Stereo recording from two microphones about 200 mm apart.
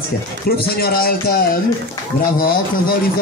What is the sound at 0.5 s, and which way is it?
Speech, 50° left (ahead or behind).